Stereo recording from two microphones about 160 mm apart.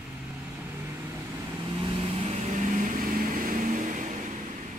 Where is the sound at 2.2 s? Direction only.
45° right (ahead or behind).